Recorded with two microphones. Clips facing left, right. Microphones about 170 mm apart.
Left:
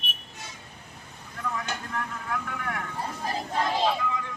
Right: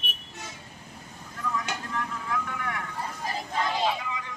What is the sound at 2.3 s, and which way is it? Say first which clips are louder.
Vehicle: even; 45° left (ahead or behind).